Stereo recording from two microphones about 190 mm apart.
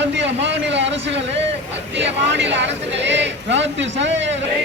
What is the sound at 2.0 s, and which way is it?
Speech, 70° right (ahead or behind).